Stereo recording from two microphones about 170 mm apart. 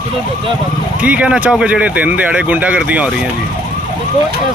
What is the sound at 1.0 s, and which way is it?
Speech, 10° right (ahead or behind).